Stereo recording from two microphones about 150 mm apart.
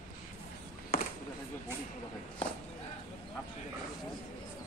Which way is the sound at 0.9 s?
80° left.